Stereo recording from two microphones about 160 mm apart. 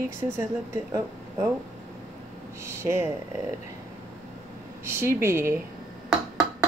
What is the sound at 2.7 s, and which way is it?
Speech, 15° right (ahead or behind).